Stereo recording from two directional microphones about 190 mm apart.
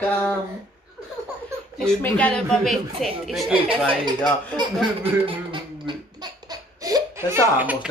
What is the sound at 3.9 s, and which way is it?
Speech, 25° right (ahead or behind).